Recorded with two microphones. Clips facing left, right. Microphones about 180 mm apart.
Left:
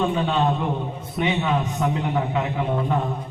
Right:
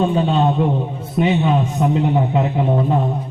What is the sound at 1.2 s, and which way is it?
A man's voice, 30° right (ahead or behind).